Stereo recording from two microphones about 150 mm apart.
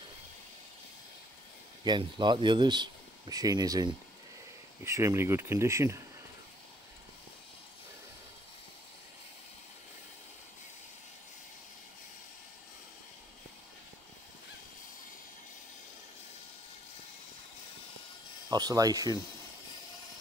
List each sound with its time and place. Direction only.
1.9 s speech: 30° right (ahead or behind)
18.5 s speech: 25° right (ahead or behind)